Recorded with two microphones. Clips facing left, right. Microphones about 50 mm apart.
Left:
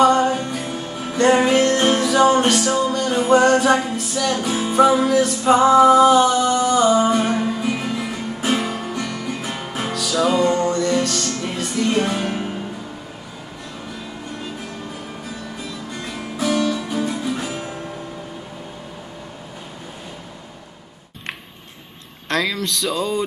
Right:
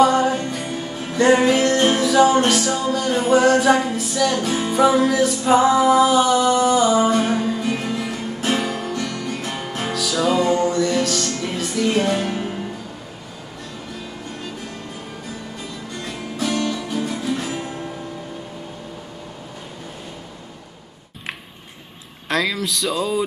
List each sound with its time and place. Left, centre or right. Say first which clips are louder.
0.0 s music: left 1 dB; centre
7.3 s music: even; centre
16.8 s music: left 1 dB; centre
22.3 s music: even; centre